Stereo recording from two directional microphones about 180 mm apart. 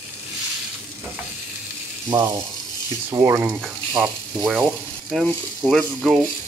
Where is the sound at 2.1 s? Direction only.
20° right (ahead or behind).